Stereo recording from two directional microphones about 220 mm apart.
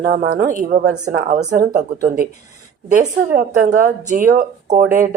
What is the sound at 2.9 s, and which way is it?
A woman's voice, 40° right (ahead or behind).